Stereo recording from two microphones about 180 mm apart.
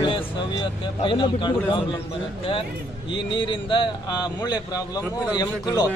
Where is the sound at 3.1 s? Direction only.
25° left (ahead or behind).